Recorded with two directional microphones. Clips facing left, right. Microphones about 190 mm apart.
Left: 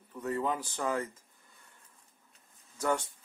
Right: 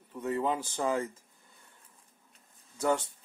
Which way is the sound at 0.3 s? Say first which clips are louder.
Right 2 dB; 25° right (ahead or behind).